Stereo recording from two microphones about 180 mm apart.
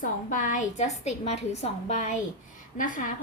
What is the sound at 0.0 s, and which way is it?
A woman's voice, 45° left (ahead or behind).